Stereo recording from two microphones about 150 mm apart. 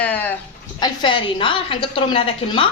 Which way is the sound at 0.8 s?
30° left (ahead or behind).